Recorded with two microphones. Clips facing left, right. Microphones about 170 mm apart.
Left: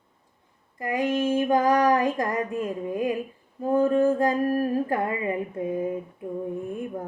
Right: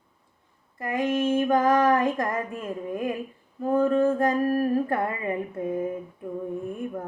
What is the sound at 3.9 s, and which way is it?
Music, 15° left (ahead or behind).